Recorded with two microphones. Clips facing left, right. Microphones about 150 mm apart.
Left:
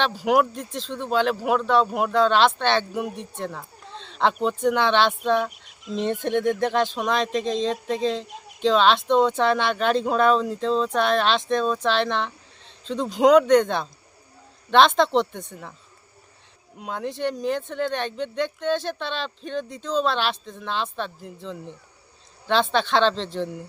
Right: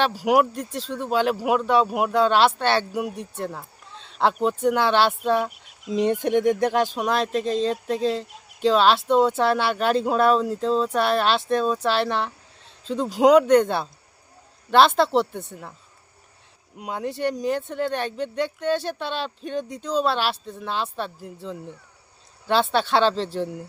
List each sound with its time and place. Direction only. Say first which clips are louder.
0.0 s speech: right 1 dB; 10° right (ahead or behind)
16.7 s speech: right 1 dB; 5° right (ahead or behind)